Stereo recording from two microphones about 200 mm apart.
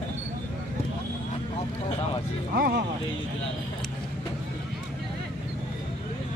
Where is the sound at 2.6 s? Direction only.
50° right (ahead or behind).